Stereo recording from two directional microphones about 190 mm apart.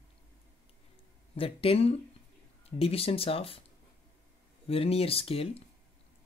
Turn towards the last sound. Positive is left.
turn(degrees=30)  # may be behind; listen again after turning